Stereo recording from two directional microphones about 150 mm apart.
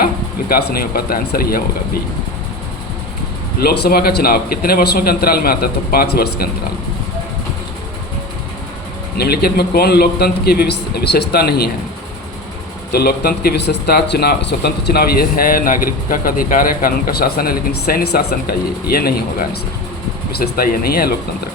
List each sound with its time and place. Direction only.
0.0 s speech: 90° left
3.6 s speech: 90° left
9.1 s speech: 90° left
12.9 s speech: 90° left